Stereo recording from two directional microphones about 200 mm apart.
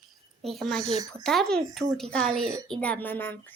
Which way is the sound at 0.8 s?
30° right (ahead or behind).